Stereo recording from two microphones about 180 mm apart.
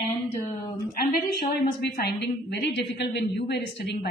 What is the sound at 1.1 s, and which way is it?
A woman's voice, 60° left (ahead or behind).